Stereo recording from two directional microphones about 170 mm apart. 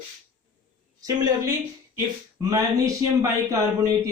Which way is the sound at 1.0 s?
20° right (ahead or behind).